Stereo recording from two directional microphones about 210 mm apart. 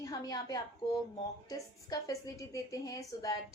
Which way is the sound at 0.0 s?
15° left (ahead or behind).